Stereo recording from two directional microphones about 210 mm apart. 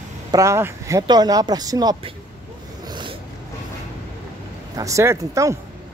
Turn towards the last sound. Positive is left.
turn(degrees=-15)  # may be behind; listen again after turning